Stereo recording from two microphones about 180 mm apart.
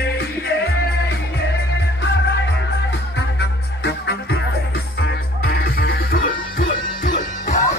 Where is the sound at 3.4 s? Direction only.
70° left (ahead or behind).